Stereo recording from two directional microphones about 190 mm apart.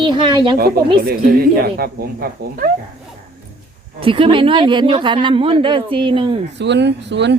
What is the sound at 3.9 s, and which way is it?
A woman's voice, 30° right (ahead or behind).